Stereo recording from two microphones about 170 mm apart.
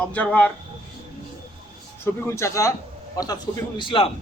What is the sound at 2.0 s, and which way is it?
A man's voice, 15° left (ahead or behind).